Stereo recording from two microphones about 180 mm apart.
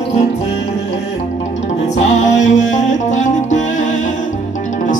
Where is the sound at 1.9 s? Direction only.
40° left (ahead or behind).